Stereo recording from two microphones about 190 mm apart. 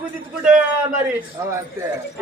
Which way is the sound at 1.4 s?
15° right (ahead or behind).